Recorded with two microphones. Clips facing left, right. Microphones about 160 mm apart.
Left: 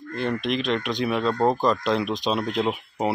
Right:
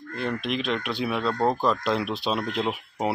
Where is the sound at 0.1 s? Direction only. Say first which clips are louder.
Left 3 dB; centre (ahead or behind).